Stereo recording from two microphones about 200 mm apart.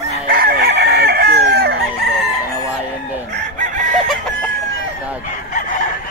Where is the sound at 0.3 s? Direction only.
50° right (ahead or behind).